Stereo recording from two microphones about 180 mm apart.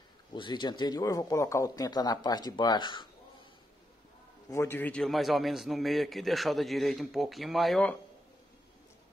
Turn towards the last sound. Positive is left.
turn(degrees=5)  # may be behind; listen again after turning